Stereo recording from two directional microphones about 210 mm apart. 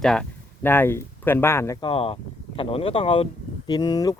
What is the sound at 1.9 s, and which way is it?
Speech, 25° left (ahead or behind).